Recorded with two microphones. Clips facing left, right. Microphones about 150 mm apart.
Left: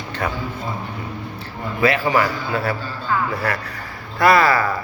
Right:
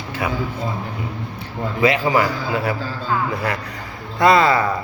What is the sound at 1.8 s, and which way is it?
A man's voice, 15° right (ahead or behind).